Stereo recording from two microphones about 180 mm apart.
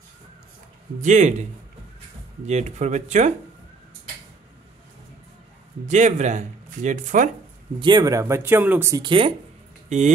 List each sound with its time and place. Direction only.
1.0 s speech: 40° right (ahead or behind)
2.4 s speech: 40° right (ahead or behind)
5.9 s speech: 40° right (ahead or behind)
7.8 s speech: 20° right (ahead or behind)
9.0 s speech: 30° right (ahead or behind)
9.8 s speech: 40° right (ahead or behind)